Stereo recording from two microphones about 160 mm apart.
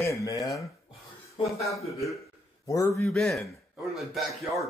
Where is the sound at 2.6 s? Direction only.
20° left (ahead or behind).